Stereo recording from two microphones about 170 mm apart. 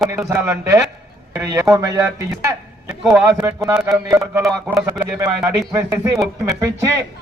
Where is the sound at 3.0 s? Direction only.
Centre (ahead or behind).